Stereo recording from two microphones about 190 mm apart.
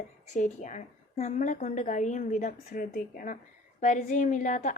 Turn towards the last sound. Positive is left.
turn(degrees=40)  # may be behind; listen again after turning